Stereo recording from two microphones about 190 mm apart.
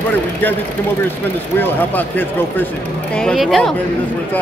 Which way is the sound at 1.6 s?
10° left (ahead or behind).